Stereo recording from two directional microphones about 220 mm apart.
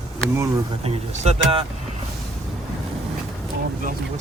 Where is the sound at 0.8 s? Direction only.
25° right (ahead or behind).